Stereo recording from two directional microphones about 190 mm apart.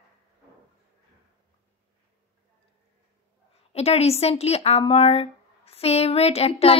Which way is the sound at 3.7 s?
35° left (ahead or behind).